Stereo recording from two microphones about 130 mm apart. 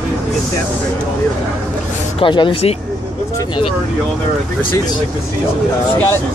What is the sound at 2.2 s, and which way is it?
Speech, 40° left (ahead or behind).